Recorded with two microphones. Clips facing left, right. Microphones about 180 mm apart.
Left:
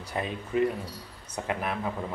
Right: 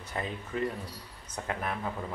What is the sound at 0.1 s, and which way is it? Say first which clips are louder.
A man's voice: left 5 dB; 15° left (ahead or behind).